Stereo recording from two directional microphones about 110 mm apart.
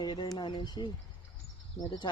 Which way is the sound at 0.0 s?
40° left (ahead or behind).